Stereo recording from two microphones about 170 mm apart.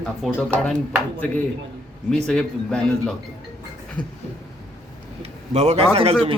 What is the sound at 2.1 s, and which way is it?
Speech, 5° left (ahead or behind).